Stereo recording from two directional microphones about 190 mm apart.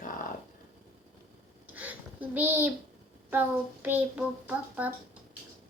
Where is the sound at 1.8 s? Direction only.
10° right (ahead or behind).